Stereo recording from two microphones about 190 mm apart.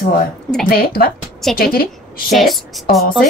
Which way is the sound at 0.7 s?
50° left (ahead or behind).